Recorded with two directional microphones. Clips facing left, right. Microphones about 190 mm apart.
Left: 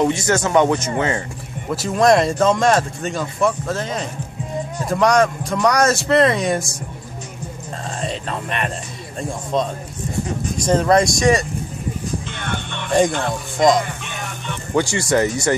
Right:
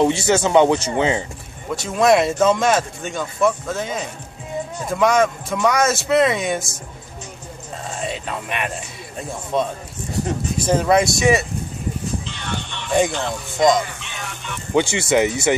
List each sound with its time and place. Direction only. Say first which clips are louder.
0.0 s a man's voice: right 1 dB; 25° right (ahead or behind)
1.7 s speech: left 1 dB; centre (ahead or behind)
8.0 s speech: left 1 dB; 5° right (ahead or behind)
12.3 s music: left 2 dB; 55° left (ahead or behind)
13.6 s speech: left 1 dB; centre (ahead or behind)
14.7 s speech: right 1 dB; 20° right (ahead or behind)
15.2 s speech: even; 5° right (ahead or behind)